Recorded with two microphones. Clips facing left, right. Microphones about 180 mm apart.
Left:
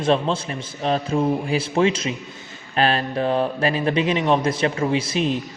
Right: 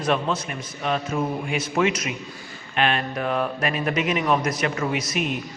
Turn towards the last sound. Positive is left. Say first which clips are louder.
# left 4 dB
turn(degrees=30)  # may be behind; listen again after turning